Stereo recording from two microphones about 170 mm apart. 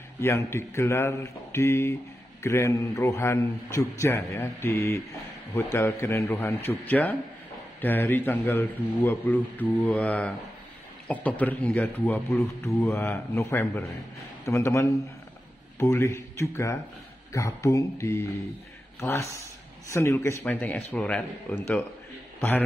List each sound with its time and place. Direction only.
0.2 s speech: 15° left (ahead or behind)